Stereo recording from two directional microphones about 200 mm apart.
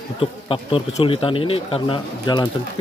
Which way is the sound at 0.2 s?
25° left (ahead or behind).